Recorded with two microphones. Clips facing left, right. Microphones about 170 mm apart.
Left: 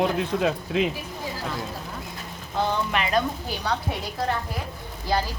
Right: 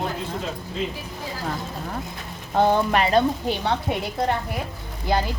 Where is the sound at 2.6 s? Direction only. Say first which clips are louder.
Right 6 dB; 50° right (ahead or behind).